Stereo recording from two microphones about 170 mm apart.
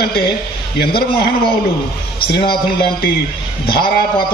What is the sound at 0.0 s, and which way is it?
A man's voice, 70° left (ahead or behind).